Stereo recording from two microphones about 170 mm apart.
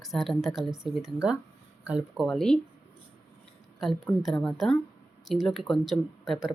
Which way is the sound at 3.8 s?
Centre (ahead or behind).